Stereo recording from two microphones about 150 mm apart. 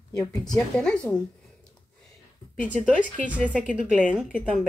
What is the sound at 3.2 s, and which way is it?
Speech, 10° right (ahead or behind).